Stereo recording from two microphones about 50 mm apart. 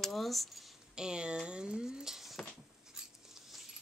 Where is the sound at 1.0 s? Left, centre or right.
Centre.